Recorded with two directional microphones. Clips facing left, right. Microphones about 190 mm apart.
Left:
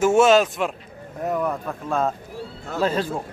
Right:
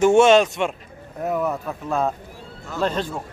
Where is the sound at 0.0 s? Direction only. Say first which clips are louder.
Right 2 dB; 5° left (ahead or behind).